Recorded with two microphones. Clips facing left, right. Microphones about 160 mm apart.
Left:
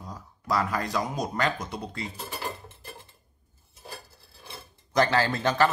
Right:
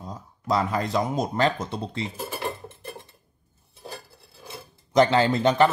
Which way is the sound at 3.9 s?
Centre (ahead or behind).